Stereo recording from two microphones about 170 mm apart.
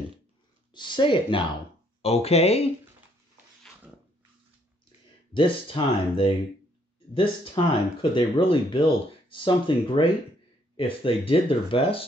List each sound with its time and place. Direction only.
0.7 s speech: 25° left (ahead or behind)
5.3 s speech: 30° left (ahead or behind)